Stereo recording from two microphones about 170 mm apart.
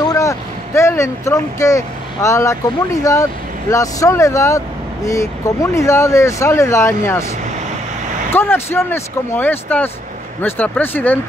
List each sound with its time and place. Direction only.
0.0 s speech: 20° left (ahead or behind)
8.3 s speech: 10° left (ahead or behind)